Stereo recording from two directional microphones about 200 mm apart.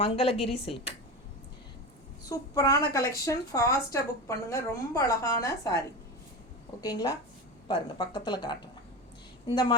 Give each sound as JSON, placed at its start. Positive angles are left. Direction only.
{"t": 0.0, "sound": "speech", "side_deg": 30}
{"t": 2.2, "sound": "a woman's voice", "side_deg": 15}
{"t": 6.8, "sound": "speech", "side_deg": 20}